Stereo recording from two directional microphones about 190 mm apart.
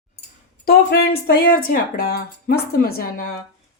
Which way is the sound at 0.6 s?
55° left (ahead or behind).